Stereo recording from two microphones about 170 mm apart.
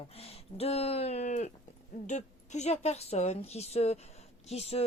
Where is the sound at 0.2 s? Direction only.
35° left (ahead or behind).